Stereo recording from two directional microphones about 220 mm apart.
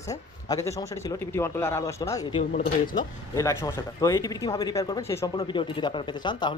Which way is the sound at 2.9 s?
15° left (ahead or behind).